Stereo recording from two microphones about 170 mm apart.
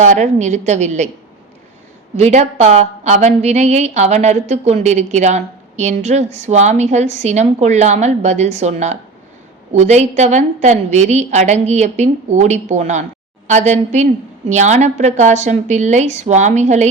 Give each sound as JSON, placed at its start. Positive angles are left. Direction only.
{"t": 0.0, "sound": "a woman's voice", "side_deg": -45}
{"t": 2.1, "sound": "a woman's voice", "side_deg": -40}